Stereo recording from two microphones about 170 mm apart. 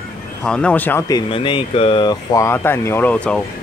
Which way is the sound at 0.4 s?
5° left (ahead or behind).